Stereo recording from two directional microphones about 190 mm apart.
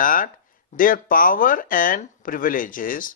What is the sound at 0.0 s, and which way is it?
Speech, 45° left (ahead or behind).